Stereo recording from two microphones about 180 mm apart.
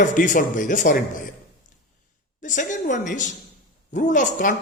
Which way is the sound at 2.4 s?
45° left (ahead or behind).